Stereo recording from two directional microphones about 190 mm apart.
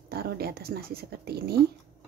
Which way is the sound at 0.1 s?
55° right (ahead or behind).